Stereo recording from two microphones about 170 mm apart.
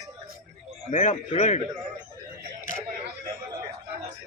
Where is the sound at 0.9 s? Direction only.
45° left (ahead or behind).